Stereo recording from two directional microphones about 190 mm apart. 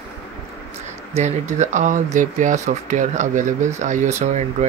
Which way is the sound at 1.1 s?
35° right (ahead or behind).